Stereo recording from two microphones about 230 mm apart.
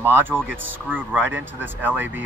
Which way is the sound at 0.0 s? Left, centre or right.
Centre.